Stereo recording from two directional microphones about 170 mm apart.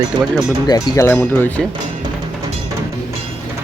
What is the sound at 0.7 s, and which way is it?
Speech, 20° left (ahead or behind).